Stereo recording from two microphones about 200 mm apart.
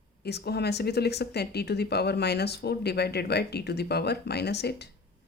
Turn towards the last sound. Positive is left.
turn(degrees=55)  # may be behind; listen again after turning